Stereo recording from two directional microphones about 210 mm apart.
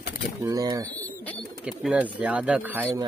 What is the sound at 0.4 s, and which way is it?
Speech, 15° right (ahead or behind).